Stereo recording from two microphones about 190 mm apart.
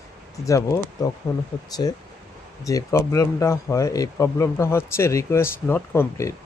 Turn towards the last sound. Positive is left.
turn(degrees=15)  # may be behind; listen again after turning